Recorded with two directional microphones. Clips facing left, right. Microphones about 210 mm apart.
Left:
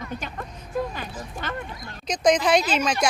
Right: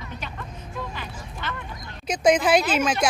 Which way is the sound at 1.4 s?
45° left (ahead or behind).